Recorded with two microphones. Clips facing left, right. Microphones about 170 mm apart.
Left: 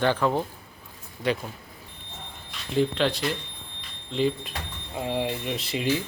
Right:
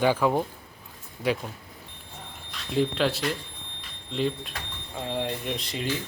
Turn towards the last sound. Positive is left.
turn(degrees=5)  # may be behind; listen again after turning